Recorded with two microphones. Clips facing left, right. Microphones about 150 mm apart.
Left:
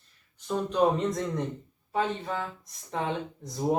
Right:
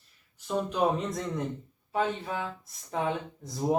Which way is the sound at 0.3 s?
5° right (ahead or behind).